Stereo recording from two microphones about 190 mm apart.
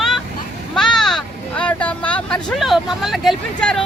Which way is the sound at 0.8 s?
Centre (ahead or behind).